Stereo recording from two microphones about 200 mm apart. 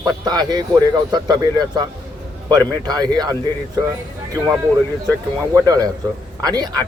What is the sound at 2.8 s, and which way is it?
Speech, 20° right (ahead or behind).